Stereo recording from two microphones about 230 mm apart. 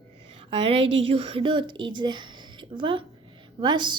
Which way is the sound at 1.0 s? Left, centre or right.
Right.